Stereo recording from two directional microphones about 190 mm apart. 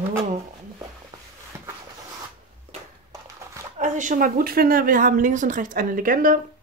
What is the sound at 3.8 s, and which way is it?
Speech, 40° right (ahead or behind).